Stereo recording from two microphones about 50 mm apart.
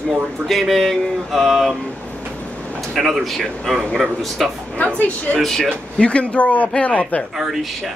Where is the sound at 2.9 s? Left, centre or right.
Centre.